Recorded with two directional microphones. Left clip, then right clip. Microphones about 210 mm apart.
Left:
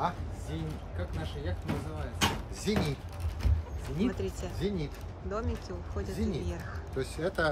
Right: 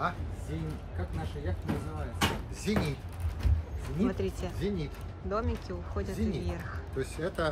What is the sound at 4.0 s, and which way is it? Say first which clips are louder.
Speech: right 2 dB; 10° left (ahead or behind).